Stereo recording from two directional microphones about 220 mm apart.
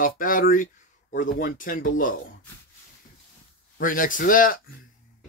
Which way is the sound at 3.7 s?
40° left (ahead or behind).